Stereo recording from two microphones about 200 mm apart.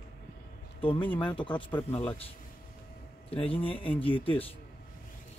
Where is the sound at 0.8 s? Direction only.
25° left (ahead or behind).